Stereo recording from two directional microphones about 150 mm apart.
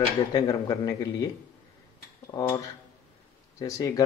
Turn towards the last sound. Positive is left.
turn(degrees=20)  # may be behind; listen again after turning